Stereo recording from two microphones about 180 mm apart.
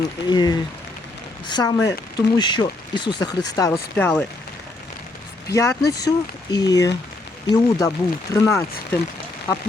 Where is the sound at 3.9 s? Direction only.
5° left (ahead or behind).